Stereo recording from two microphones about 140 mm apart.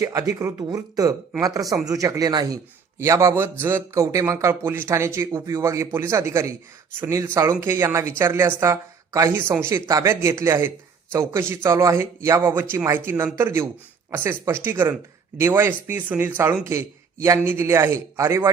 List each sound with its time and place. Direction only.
0.0 s a man's voice: 25° right (ahead or behind)